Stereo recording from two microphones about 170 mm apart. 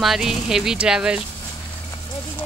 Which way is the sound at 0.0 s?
Centre (ahead or behind).